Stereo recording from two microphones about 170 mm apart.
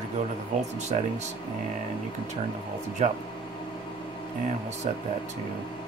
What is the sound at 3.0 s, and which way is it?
Speech, 40° right (ahead or behind).